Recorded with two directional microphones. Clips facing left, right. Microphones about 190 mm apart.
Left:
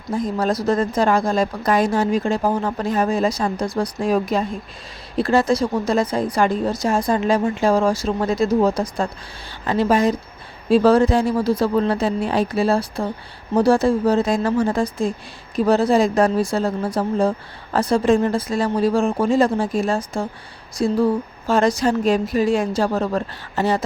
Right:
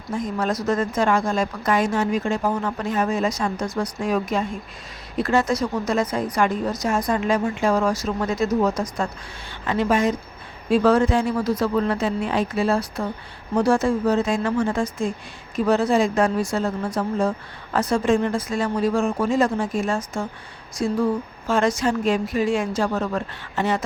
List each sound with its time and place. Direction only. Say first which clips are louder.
0.1 s a woman's voice: left 3 dB; 35° left (ahead or behind)